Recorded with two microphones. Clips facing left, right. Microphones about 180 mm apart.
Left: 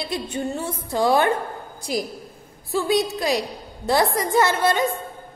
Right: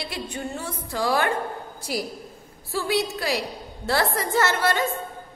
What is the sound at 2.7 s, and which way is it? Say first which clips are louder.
A woman's voice: left 4 dB; 20° left (ahead or behind).